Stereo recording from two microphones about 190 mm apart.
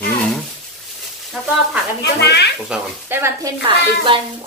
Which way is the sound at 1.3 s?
Centre (ahead or behind).